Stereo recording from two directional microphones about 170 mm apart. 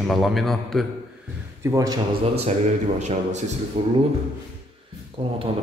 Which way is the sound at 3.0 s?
40° right (ahead or behind).